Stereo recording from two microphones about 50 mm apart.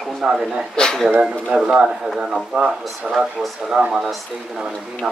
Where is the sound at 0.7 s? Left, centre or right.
Centre.